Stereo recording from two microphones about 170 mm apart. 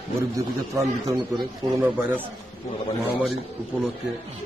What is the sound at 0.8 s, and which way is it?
A man's voice, 20° right (ahead or behind).